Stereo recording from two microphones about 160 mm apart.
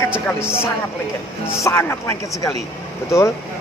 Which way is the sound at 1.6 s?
15° left (ahead or behind).